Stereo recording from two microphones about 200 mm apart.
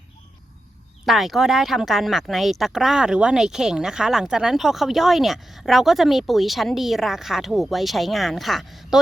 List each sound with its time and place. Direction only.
1.0 s speech: centre (ahead or behind)